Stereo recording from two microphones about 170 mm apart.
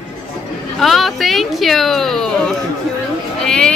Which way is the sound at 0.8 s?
Centre (ahead or behind).